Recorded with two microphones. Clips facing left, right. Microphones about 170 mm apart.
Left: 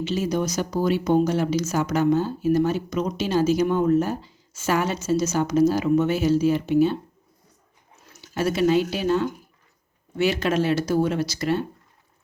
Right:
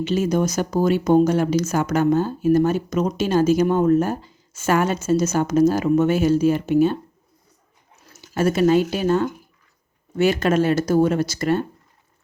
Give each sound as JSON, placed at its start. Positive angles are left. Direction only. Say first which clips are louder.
{"t": 0.0, "sound": "speech", "louder": "right 4 dB", "side_deg": -50}
{"t": 8.1, "sound": "speech", "louder": "right 4 dB", "side_deg": -45}